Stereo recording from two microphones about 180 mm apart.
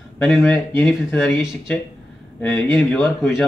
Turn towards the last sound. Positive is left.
turn(degrees=10)  # may be behind; listen again after turning